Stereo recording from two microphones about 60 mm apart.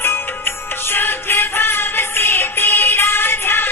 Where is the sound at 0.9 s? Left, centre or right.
Left.